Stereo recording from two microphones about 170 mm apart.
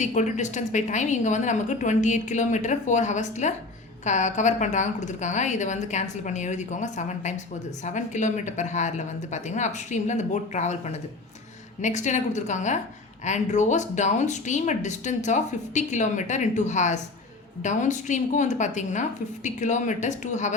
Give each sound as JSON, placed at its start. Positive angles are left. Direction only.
{"t": 0.0, "sound": "speech", "side_deg": 45}